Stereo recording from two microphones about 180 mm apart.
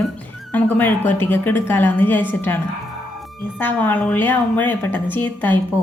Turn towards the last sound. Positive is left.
turn(degrees=10)  # may be behind; listen again after turning